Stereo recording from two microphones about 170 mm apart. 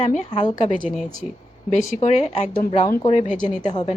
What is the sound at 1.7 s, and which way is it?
Speech, 45° left (ahead or behind).